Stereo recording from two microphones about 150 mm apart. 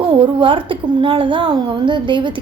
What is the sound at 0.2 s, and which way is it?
A woman's voice, 35° right (ahead or behind).